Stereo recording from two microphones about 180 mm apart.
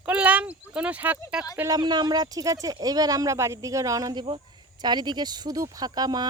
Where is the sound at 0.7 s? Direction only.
10° right (ahead or behind).